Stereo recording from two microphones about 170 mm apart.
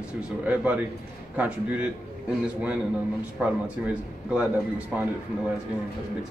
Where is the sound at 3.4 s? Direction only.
10° right (ahead or behind).